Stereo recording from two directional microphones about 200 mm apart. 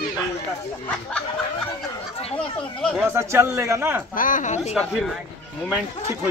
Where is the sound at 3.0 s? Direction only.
15° right (ahead or behind).